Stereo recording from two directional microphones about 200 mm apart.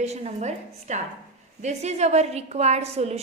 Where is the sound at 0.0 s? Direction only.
35° right (ahead or behind).